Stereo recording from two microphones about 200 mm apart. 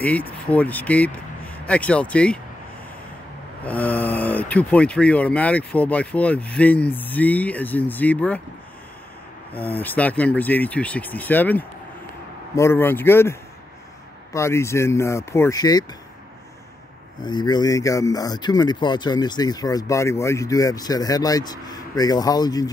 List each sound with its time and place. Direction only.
0.0 s speech: 5° left (ahead or behind)
3.6 s speech: 10° left (ahead or behind)
9.5 s speech: 10° left (ahead or behind)
17.2 s speech: 20° left (ahead or behind)